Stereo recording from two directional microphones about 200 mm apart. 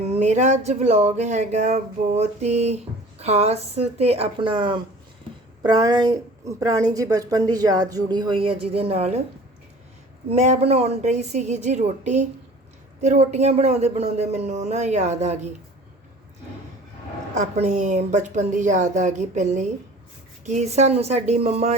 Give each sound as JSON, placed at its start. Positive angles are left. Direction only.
{"t": 0.2, "sound": "a woman's voice", "side_deg": -35}
{"t": 10.3, "sound": "speech", "side_deg": -35}
{"t": 17.3, "sound": "speech", "side_deg": -35}